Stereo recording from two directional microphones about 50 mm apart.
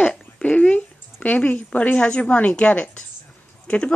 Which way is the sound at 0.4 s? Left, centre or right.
Left.